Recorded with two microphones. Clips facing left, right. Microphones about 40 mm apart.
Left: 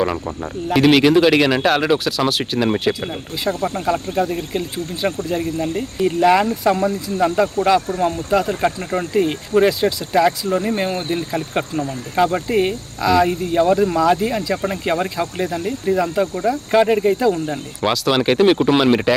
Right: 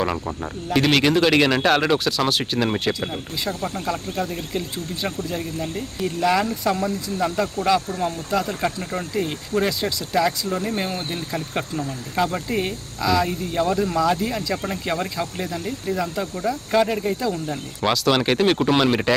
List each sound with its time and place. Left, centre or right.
0.0 s speech: centre
3.8 s speech: centre
17.8 s speech: centre